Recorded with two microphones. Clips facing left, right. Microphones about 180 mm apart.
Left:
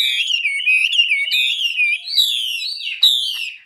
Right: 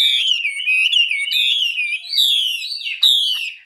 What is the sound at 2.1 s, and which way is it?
Alarm, 25° right (ahead or behind).